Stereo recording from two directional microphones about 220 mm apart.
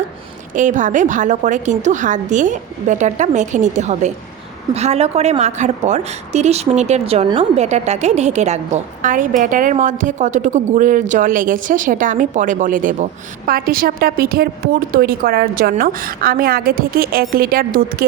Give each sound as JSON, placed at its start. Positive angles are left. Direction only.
{"t": 0.5, "sound": "speech", "side_deg": -35}